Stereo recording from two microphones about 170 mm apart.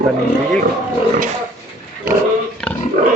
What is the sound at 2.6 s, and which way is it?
Pig, 5° left (ahead or behind).